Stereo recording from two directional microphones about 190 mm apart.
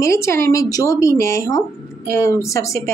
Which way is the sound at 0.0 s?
15° left (ahead or behind).